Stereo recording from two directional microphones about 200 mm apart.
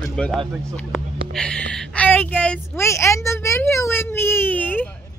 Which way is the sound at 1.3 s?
5° left (ahead or behind).